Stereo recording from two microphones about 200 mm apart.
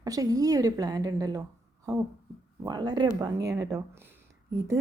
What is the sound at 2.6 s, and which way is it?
A woman's voice, 20° right (ahead or behind).